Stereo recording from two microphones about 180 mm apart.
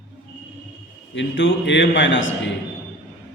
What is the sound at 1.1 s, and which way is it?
A man's voice, 90° left.